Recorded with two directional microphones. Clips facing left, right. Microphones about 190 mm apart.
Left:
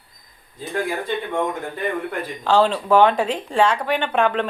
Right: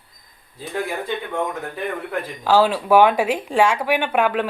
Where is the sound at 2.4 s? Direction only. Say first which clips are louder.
Right 1 dB; 5° right (ahead or behind).